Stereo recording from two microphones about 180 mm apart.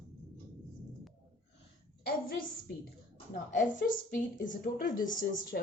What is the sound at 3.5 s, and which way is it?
Speech, 45° left (ahead or behind).